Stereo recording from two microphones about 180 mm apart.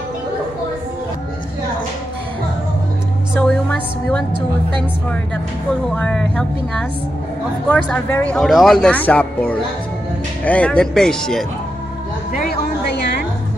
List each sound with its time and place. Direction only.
3.3 s a sound: 5° left (ahead or behind)
5.9 s speech: 5° left (ahead or behind)
12.4 s music: 60° left (ahead or behind)